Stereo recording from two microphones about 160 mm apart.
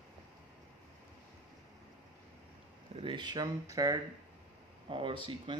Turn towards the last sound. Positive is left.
turn(degrees=-30)  # may be behind; listen again after turning